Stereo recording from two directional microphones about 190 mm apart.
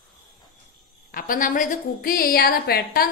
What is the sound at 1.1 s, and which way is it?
A woman's voice, 50° left (ahead or behind).